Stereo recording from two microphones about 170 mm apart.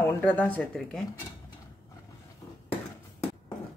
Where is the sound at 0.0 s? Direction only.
10° left (ahead or behind).